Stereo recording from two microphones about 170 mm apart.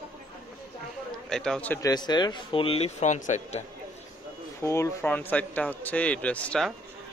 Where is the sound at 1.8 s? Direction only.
25° left (ahead or behind); by 3.6 s 45° left (ahead or behind).